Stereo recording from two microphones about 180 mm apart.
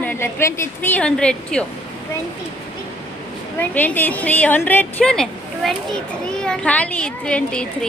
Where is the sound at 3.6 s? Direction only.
10° left (ahead or behind).